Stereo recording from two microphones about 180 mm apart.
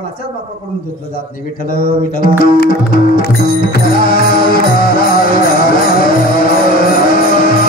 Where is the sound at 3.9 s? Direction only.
55° left (ahead or behind).